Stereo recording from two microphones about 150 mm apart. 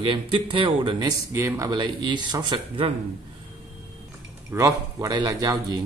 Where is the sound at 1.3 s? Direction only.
20° right (ahead or behind).